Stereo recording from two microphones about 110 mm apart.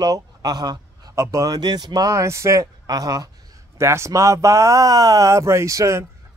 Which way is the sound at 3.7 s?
25° right (ahead or behind).